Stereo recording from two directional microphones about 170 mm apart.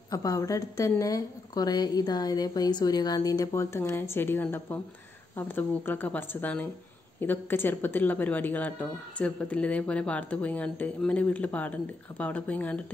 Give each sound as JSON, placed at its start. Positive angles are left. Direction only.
{"t": 0.1, "sound": "a woman's voice", "side_deg": 20}